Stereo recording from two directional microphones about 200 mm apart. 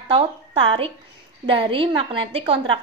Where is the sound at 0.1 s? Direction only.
30° right (ahead or behind).